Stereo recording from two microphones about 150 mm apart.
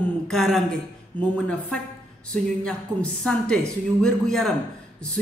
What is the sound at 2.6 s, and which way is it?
A man's voice, 5° left (ahead or behind).